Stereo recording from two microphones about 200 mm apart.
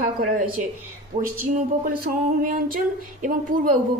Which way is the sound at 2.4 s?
40° right (ahead or behind).